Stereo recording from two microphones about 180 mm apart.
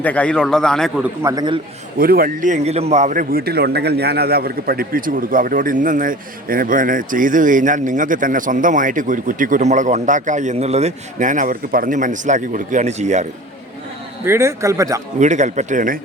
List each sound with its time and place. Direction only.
0.0 s a man's voice: 5° left (ahead or behind)
1.0 s a man's voice: 15° right (ahead or behind)
2.0 s a man's voice: 55° right (ahead or behind)
14.3 s speech: 15° right (ahead or behind)
15.2 s speech: 40° right (ahead or behind)